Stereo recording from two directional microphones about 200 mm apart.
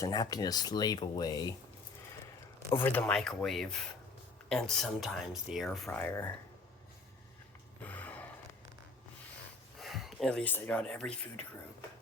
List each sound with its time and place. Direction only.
0.0 s speech: 20° left (ahead or behind)
2.8 s speech: 5° left (ahead or behind)
7.9 s a sound: 10° left (ahead or behind)
9.7 s speech: centre (ahead or behind)